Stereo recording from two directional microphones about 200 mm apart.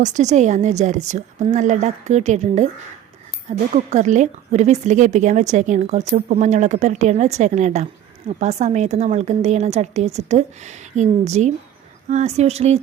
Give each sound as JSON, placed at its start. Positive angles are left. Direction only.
{"t": 0.0, "sound": "a woman's voice", "side_deg": -35}
{"t": 3.9, "sound": "a woman's voice", "side_deg": -35}